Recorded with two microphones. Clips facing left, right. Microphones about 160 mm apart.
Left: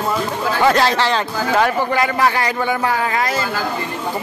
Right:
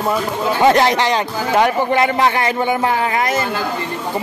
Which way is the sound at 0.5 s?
20° right (ahead or behind).